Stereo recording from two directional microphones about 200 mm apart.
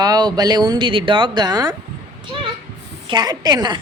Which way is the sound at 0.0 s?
20° right (ahead or behind).